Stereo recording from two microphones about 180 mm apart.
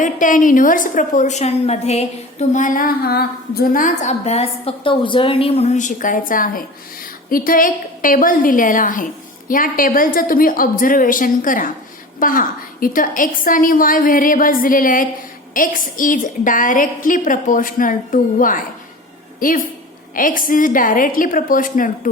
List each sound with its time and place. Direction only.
0.0 s a woman's voice: 45° left (ahead or behind)